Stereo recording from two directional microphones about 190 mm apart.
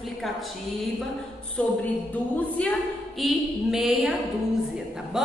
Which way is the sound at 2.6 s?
5° left (ahead or behind).